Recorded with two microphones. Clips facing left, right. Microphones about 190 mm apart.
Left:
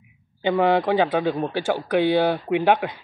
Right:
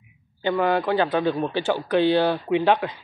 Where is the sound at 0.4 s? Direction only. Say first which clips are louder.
Left 2 dB; 15° left (ahead or behind).